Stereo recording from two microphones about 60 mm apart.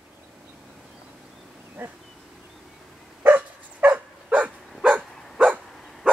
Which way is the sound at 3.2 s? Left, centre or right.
Right.